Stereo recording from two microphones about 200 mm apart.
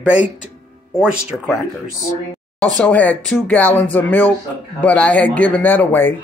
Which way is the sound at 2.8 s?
10° left (ahead or behind).